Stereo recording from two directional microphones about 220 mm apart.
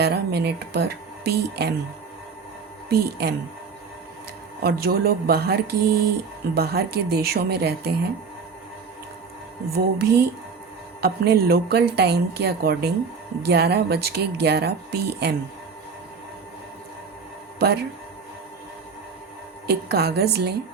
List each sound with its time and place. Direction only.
0.0 s speech: 45° right (ahead or behind)
2.9 s speech: 45° right (ahead or behind)
4.6 s speech: 45° right (ahead or behind)
9.7 s speech: 45° right (ahead or behind)
17.6 s speech: 45° right (ahead or behind)
19.6 s speech: 45° right (ahead or behind)